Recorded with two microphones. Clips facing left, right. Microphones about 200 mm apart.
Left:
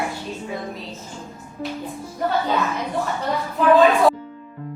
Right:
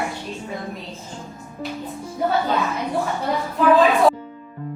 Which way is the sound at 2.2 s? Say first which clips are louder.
Right 1 dB; centre (ahead or behind).